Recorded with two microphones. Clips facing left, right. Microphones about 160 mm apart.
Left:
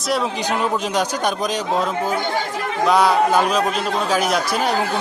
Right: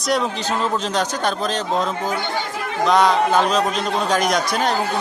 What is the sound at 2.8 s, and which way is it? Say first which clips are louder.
A man's voice: even; 10° left (ahead or behind).